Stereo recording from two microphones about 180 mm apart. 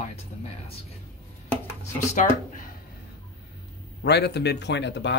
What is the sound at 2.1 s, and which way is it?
Speech, 45° left (ahead or behind).